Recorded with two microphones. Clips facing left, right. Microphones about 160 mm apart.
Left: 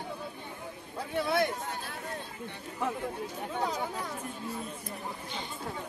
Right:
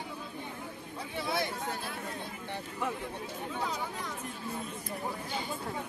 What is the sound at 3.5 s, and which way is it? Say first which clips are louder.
Speech: left 4 dB; 45° left (ahead or behind).